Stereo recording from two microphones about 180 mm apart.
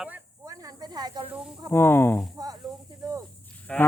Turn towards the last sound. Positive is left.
turn(degrees=5)  # may be behind; listen again after turning